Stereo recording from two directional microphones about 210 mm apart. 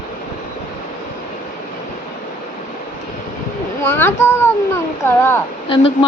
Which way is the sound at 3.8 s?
10° left (ahead or behind).